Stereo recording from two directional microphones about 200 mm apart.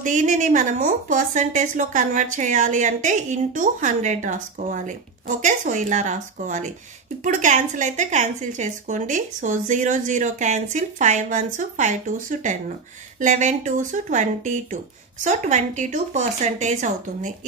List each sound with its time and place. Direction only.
0.0 s a woman's voice: 40° right (ahead or behind)